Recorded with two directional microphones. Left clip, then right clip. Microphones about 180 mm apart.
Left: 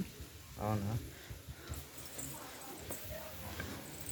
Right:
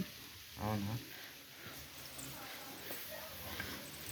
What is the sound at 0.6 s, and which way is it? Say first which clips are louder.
Speech: left 2 dB; 40° left (ahead or behind).